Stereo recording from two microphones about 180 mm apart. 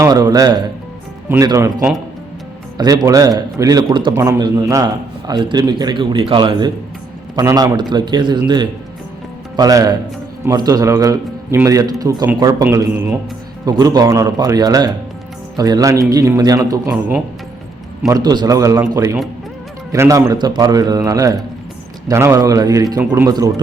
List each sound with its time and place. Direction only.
0.0 s a man's voice: 20° right (ahead or behind)
2.7 s a man's voice: 20° right (ahead or behind)
16.9 s a man's voice: 5° right (ahead or behind)
18.1 s a man's voice: 20° right (ahead or behind)